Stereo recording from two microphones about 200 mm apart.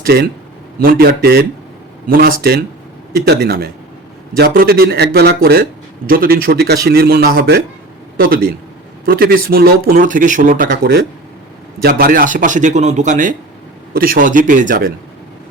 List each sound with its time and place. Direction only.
0.0 s a man's voice: 50° right (ahead or behind)